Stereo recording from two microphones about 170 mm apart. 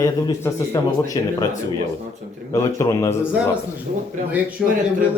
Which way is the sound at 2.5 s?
20° left (ahead or behind).